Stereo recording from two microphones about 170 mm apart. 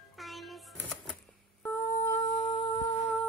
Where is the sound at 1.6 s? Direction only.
15° left (ahead or behind).